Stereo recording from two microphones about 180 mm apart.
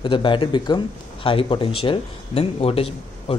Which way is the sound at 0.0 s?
30° left (ahead or behind).